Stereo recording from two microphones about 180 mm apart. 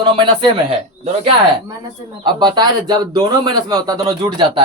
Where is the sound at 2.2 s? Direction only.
25° right (ahead or behind).